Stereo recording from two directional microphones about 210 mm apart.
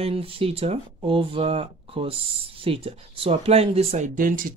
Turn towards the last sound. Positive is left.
turn(degrees=-40)  # may be behind; listen again after turning